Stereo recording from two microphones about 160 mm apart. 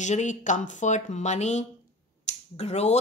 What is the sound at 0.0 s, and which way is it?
A woman's voice, 50° left (ahead or behind).